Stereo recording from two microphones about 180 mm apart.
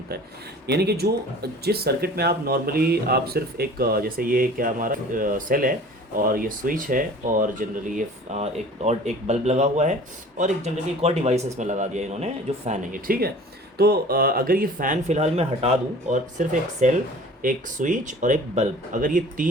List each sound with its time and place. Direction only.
0.7 s a man's voice: 65° right (ahead or behind); by 19.5 s 45° right (ahead or behind)